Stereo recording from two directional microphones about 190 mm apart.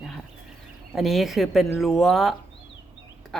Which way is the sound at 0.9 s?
Centre (ahead or behind).